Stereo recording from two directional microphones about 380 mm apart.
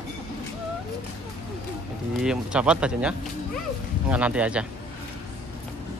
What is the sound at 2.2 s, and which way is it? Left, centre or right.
Speech, centre.